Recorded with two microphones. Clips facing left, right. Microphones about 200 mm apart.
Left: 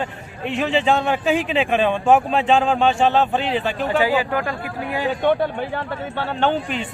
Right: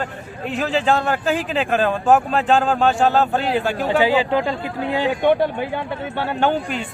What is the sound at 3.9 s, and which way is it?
Speech, 20° right (ahead or behind).